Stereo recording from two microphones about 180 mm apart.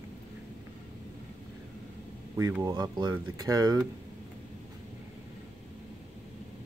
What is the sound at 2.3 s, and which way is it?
Speech, 15° right (ahead or behind).